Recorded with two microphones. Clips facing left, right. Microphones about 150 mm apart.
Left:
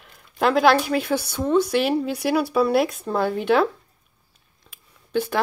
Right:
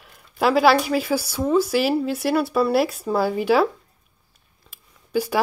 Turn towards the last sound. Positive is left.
turn(degrees=-5)  # may be behind; listen again after turning